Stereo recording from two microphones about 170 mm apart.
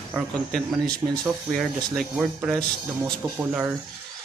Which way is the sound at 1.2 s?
Centre (ahead or behind).